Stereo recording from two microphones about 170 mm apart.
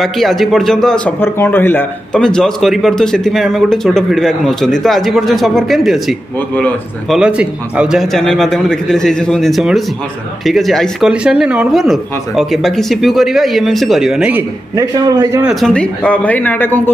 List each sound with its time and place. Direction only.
0.0 s speech: centre (ahead or behind)
7.2 s speech: 5° right (ahead or behind)
14.8 s a man's voice: 20° right (ahead or behind)
15.4 s speech: 5° left (ahead or behind)